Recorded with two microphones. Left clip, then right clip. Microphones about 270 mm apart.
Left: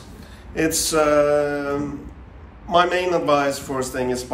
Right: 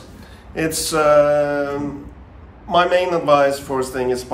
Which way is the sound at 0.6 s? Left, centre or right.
Centre.